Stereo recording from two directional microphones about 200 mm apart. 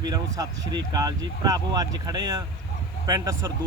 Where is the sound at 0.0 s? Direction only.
20° right (ahead or behind).